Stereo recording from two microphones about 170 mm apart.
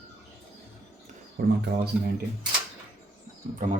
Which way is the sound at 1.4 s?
65° right (ahead or behind).